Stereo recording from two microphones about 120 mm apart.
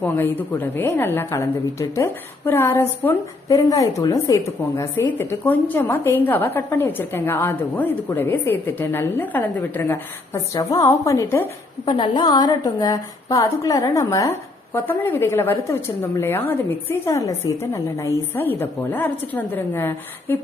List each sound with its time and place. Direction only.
0.0 s a woman's voice: 15° left (ahead or behind)
11.9 s a woman's voice: 40° left (ahead or behind); by 20.3 s 20° left (ahead or behind)